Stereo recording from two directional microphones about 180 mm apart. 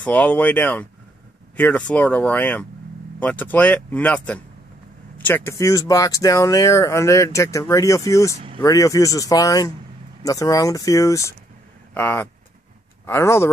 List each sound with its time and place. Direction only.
0.0 s speech: 10° left (ahead or behind)